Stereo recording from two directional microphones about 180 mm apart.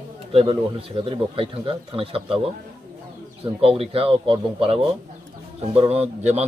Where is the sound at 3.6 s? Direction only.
30° right (ahead or behind).